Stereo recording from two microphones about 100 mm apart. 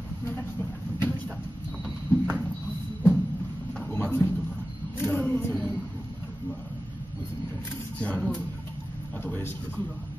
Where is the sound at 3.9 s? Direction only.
20° left (ahead or behind).